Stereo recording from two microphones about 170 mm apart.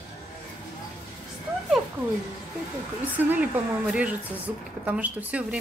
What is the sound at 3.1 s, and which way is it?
Speech, 10° right (ahead or behind).